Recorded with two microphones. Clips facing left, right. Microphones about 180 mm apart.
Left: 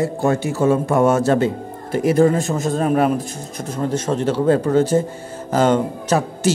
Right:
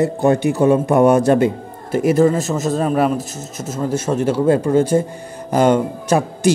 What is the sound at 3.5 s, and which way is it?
Speech, 5° right (ahead or behind).